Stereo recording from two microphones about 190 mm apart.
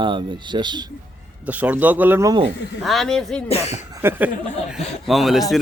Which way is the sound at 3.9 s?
10° right (ahead or behind).